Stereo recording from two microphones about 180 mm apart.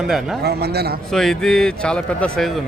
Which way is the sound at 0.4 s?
65° right (ahead or behind).